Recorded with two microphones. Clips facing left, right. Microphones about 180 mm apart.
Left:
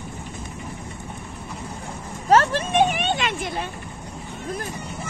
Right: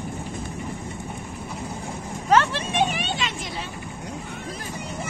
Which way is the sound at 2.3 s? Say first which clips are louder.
Left 3 dB; 45° left (ahead or behind).